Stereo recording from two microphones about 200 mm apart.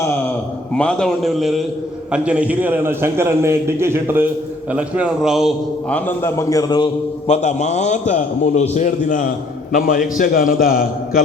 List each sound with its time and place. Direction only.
0.7 s a man's voice: 5° left (ahead or behind)
5.9 s a man's voice: 10° left (ahead or behind); by 10.8 s 45° left (ahead or behind)